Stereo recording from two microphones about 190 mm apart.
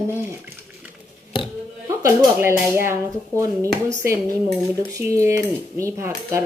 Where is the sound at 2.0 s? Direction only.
15° right (ahead or behind).